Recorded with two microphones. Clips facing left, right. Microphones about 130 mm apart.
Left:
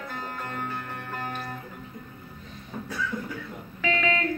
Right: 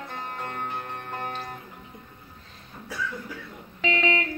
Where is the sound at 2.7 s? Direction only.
75° left (ahead or behind).